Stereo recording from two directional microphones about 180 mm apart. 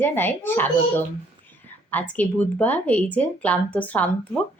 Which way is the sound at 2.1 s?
10° left (ahead or behind).